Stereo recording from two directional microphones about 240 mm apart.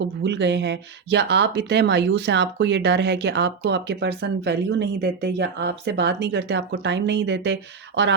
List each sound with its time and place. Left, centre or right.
0.0 s speech: right